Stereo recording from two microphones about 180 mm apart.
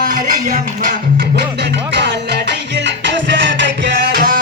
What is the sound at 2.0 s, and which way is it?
Music, 75° right (ahead or behind).